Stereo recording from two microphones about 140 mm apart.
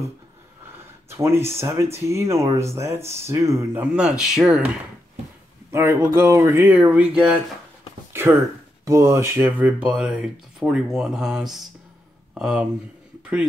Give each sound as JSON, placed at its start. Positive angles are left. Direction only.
{"t": 1.1, "sound": "speech", "side_deg": -20}
{"t": 3.8, "sound": "speech", "side_deg": -10}
{"t": 5.7, "sound": "speech", "side_deg": -20}
{"t": 8.1, "sound": "a sound", "side_deg": -15}
{"t": 8.8, "sound": "speech", "side_deg": -20}